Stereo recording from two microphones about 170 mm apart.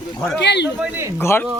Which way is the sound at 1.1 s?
10° left (ahead or behind).